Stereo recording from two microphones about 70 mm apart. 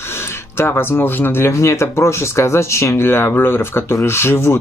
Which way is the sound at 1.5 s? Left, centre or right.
Left.